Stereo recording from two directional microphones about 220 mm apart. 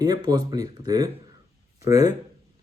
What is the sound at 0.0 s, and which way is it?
Speech, 15° right (ahead or behind).